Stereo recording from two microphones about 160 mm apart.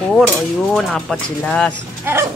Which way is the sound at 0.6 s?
Centre (ahead or behind).